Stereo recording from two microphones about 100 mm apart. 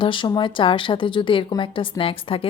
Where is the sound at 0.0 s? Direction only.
55° left (ahead or behind).